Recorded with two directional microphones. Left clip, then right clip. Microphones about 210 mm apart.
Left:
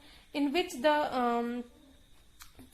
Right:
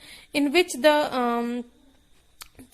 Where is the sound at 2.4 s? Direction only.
35° right (ahead or behind).